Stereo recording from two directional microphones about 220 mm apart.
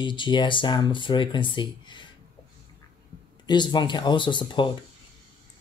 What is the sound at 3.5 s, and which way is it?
Speech, 20° left (ahead or behind).